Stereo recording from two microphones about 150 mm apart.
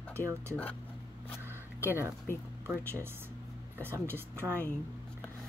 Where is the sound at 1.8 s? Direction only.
15° right (ahead or behind).